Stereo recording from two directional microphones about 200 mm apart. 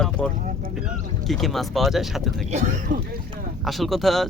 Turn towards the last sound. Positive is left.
turn(degrees=0)  # may be behind; listen again after turning